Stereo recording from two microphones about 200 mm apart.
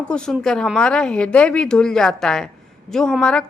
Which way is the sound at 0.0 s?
5° left (ahead or behind).